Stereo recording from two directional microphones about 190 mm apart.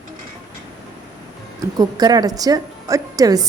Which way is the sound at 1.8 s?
20° right (ahead or behind).